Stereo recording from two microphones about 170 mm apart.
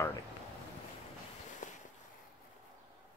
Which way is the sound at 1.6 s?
50° left (ahead or behind).